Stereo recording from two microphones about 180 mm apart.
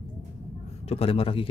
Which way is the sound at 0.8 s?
35° left (ahead or behind).